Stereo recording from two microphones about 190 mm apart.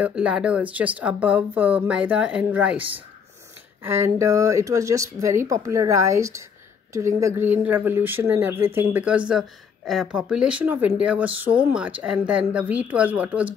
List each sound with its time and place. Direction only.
0.0 s speech: 5° right (ahead or behind)
3.8 s a woman's voice: 15° right (ahead or behind)